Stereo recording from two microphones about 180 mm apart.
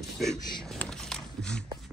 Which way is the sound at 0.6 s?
5° left (ahead or behind).